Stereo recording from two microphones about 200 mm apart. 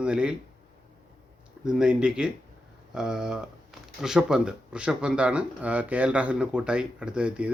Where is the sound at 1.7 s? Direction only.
5° right (ahead or behind).